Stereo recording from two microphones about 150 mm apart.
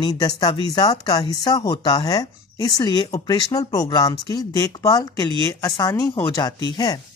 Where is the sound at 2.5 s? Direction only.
30° left (ahead or behind).